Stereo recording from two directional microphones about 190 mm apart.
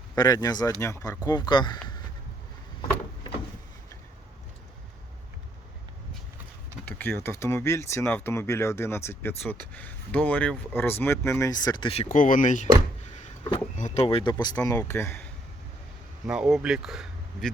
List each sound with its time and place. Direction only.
0.2 s speech: 20° left (ahead or behind)
6.8 s speech: 10° left (ahead or behind); by 12.0 s 30° left (ahead or behind)
12.0 s speech: 45° left (ahead or behind); by 15.3 s 10° left (ahead or behind)
16.2 s speech: centre (ahead or behind)